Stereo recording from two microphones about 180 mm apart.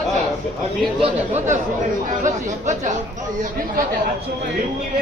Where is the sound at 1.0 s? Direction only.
40° right (ahead or behind).